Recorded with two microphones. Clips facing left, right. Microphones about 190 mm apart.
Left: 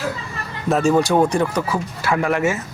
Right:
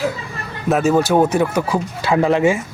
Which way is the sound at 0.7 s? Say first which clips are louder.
Right 1 dB; centre (ahead or behind).